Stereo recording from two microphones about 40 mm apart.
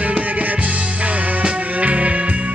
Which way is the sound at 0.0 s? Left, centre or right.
Right.